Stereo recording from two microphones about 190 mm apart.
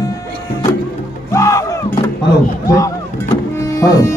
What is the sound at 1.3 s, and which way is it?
Music, 15° left (ahead or behind).